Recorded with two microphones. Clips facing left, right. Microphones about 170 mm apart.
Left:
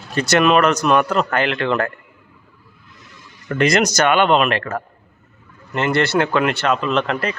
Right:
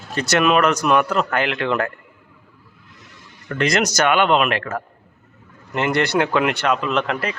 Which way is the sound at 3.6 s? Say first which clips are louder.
Left 3 dB; centre (ahead or behind).